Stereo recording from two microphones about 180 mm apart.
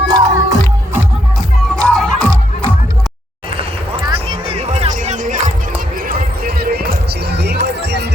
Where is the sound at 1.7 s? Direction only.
5° left (ahead or behind).